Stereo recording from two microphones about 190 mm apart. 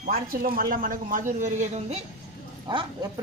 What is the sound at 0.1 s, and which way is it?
Speech, 50° right (ahead or behind).